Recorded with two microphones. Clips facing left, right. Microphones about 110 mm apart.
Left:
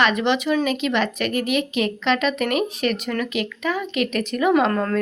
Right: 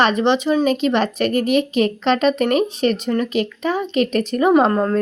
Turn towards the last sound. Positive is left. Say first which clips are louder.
# right 4 dB
turn(degrees=-25)  # may be behind; listen again after turning